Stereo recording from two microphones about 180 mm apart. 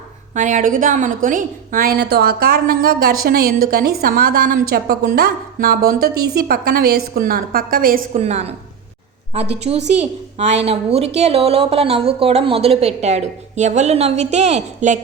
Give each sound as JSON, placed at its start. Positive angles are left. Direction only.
{"t": 0.3, "sound": "a woman's voice", "side_deg": -45}
{"t": 8.2, "sound": "a woman's voice", "side_deg": -35}